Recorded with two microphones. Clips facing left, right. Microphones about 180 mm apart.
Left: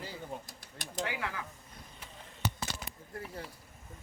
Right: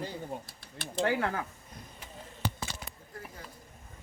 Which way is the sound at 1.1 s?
45° right (ahead or behind).